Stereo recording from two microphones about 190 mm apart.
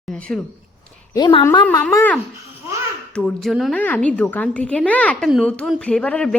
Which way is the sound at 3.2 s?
5° left (ahead or behind).